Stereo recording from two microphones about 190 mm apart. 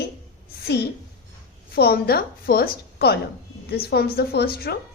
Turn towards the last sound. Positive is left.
turn(degrees=55)  # may be behind; listen again after turning